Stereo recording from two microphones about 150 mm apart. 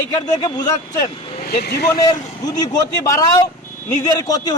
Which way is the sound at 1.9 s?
25° left (ahead or behind).